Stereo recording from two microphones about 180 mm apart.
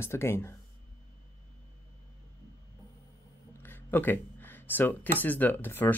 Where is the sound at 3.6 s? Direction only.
10° left (ahead or behind).